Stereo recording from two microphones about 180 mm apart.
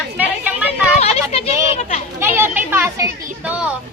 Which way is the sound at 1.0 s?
35° left (ahead or behind).